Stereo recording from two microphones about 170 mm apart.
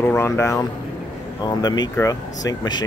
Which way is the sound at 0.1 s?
15° left (ahead or behind).